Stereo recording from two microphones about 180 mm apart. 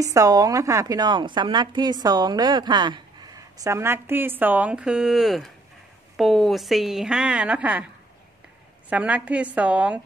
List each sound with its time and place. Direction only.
0.0 s a woman's voice: 20° right (ahead or behind)
8.8 s a woman's voice: 5° right (ahead or behind)